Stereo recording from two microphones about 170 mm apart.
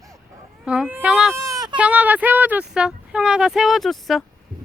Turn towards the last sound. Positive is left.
turn(degrees=0)  # may be behind; listen again after turning